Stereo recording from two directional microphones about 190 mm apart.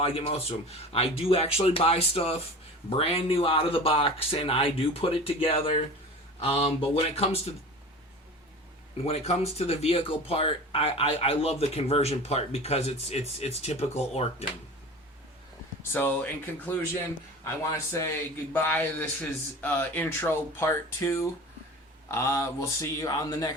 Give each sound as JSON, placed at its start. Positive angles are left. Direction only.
{"t": 0.0, "sound": "speech", "side_deg": 30}
{"t": 9.0, "sound": "speech", "side_deg": 35}
{"t": 15.8, "sound": "a man's voice", "side_deg": 10}
{"t": 17.4, "sound": "a man's voice", "side_deg": 15}